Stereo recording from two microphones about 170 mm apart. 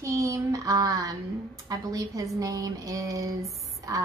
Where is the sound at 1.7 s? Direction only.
20° right (ahead or behind).